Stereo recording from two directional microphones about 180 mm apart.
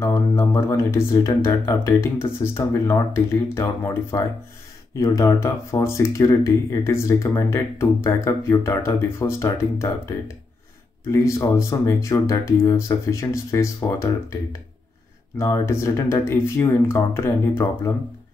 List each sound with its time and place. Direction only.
0.0 s speech: 15° left (ahead or behind)